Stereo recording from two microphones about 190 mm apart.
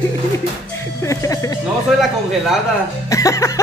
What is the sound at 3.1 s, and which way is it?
Speech, 15° left (ahead or behind).